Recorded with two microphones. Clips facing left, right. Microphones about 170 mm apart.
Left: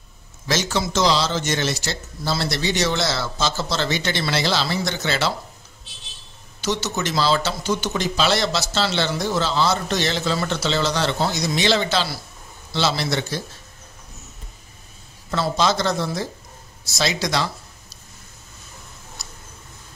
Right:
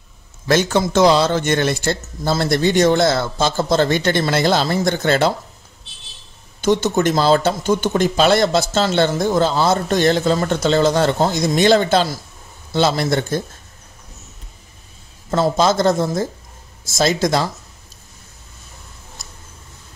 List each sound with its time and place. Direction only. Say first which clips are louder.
0.5 s a man's voice: right 7 dB; 55° right (ahead or behind)
6.6 s speech: right 9 dB; 50° right (ahead or behind)
15.3 s speech: right 5 dB; 45° right (ahead or behind)
19.2 s a sound: even; 50° right (ahead or behind)